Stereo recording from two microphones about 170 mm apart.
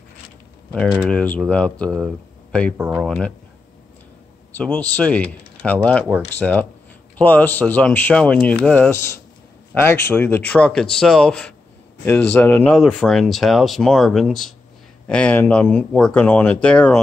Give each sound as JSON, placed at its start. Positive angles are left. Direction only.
{"t": 0.7, "sound": "speech", "side_deg": -5}
{"t": 1.1, "sound": "speech", "side_deg": 5}
{"t": 3.1, "sound": "speech", "side_deg": 5}
{"t": 4.6, "sound": "speech", "side_deg": 10}
{"t": 12.6, "sound": "speech", "side_deg": 0}